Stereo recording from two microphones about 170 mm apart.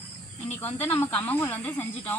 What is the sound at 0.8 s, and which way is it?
Speech, 15° left (ahead or behind).